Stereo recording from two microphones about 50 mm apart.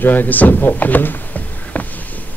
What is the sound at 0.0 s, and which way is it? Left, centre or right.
Speech, left.